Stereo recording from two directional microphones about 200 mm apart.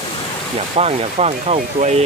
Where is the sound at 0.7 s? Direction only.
30° right (ahead or behind).